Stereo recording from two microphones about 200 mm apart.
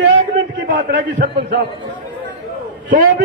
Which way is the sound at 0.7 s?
45° right (ahead or behind).